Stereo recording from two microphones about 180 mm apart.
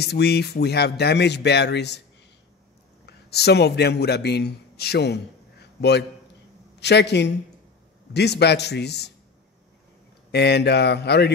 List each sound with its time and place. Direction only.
0.0 s speech: 65° left (ahead or behind)
3.1 s a man's voice: 65° left (ahead or behind)
10.3 s speech: 65° left (ahead or behind)